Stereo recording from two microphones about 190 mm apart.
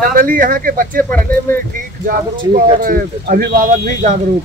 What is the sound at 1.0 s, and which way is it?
Speech, 10° left (ahead or behind).